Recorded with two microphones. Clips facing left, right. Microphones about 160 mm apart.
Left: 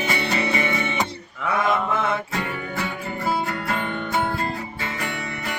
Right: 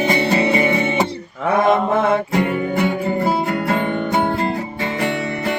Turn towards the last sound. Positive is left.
turn(degrees=-25)  # may be behind; listen again after turning